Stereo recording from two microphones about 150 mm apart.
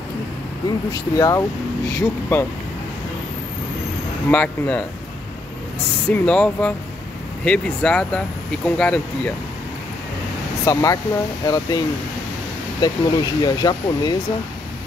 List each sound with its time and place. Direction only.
0.7 s speech: 25° left (ahead or behind)
4.3 s speech: 10° left (ahead or behind)
6.0 s speech: 10° left (ahead or behind)
10.6 s speech: 20° left (ahead or behind)
12.8 s speech: 25° left (ahead or behind)